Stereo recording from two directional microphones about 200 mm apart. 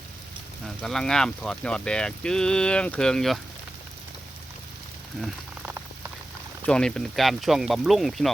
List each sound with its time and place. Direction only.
0.8 s speech: centre (ahead or behind)
5.2 s a sound: 10° right (ahead or behind)
6.7 s speech: 5° left (ahead or behind)